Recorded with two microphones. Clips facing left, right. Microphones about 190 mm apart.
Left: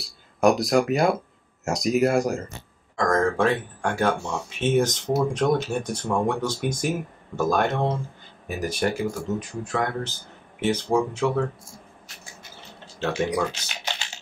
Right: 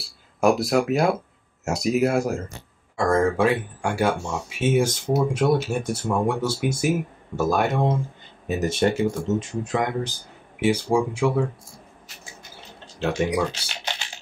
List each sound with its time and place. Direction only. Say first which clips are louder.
0.0 s speech: left 1 dB; 5° right (ahead or behind)
8.5 s speech: right 4 dB; 25° right (ahead or behind)
13.2 s speech: right 1 dB; 10° right (ahead or behind)